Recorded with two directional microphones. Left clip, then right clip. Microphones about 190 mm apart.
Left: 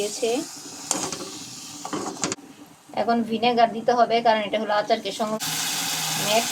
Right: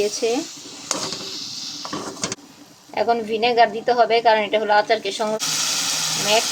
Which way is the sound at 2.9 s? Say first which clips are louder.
Right 4 dB; 35° right (ahead or behind).